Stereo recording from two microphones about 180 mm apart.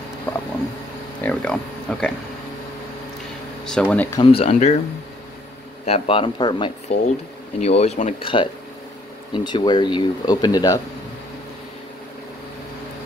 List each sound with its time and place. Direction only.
1.2 s speech: 5° left (ahead or behind)
3.6 s speech: 5° left (ahead or behind)
4.2 s speech: 30° left (ahead or behind)
5.9 s speech: 30° left (ahead or behind)
6.9 s speech: 35° left (ahead or behind); by 10.8 s 20° left (ahead or behind)